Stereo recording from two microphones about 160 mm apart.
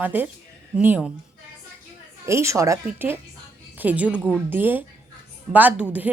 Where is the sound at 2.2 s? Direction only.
20° right (ahead or behind).